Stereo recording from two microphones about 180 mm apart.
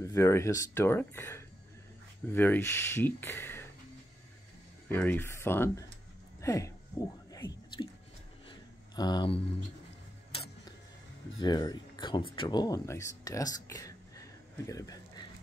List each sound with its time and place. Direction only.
0.0 s speech: 15° left (ahead or behind)
4.8 s speech: 10° left (ahead or behind)
7.3 s whispering: 25° left (ahead or behind)
8.5 s a sound: 20° left (ahead or behind)
11.3 s speech: 25° left (ahead or behind)
14.7 s a sound: 20° left (ahead or behind)